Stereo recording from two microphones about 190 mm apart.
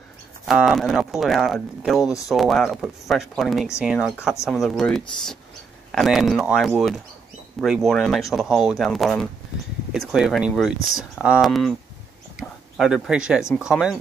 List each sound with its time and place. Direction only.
0.5 s speech: centre (ahead or behind)
10.8 s speech: 90° right
11.1 s speech: 5° right (ahead or behind)
12.4 s a sound: 5° right (ahead or behind)
13.6 s speech: 5° right (ahead or behind)